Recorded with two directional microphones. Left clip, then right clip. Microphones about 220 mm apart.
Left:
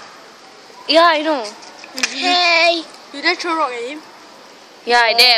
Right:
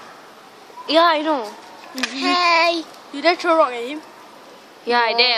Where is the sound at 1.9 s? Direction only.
35° right (ahead or behind).